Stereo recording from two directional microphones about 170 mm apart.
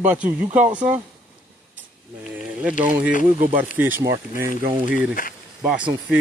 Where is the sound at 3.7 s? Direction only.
10° right (ahead or behind).